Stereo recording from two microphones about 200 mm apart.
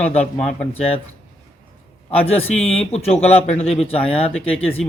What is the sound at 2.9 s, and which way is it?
Speech, 30° left (ahead or behind).